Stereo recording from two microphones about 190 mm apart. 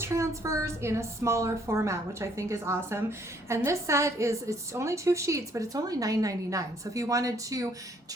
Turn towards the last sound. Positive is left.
turn(degrees=-20)  # may be behind; listen again after turning